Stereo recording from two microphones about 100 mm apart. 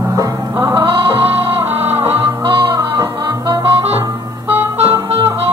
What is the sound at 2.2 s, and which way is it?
Music, 60° right (ahead or behind).